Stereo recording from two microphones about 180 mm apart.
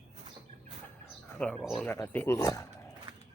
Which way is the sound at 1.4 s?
5° left (ahead or behind).